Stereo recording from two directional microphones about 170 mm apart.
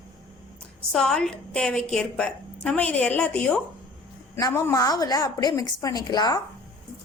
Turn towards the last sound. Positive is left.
turn(degrees=25)  # may be behind; listen again after turning